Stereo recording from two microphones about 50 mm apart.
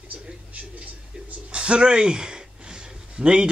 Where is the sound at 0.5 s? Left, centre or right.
Right.